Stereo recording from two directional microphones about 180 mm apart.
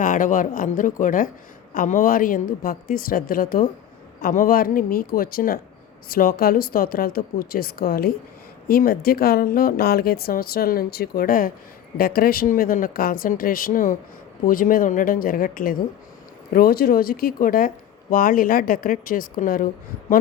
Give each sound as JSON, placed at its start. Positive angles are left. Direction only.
{"t": 0.0, "sound": "speech", "side_deg": 45}